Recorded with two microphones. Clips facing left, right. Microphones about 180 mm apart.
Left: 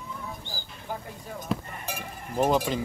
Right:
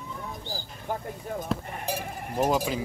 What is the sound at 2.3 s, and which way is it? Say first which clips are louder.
Speech: left 1 dB; 5° right (ahead or behind).